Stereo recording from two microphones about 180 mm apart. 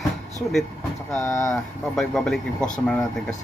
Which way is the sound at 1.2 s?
15° left (ahead or behind).